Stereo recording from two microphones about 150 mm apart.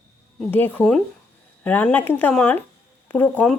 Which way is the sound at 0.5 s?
10° left (ahead or behind).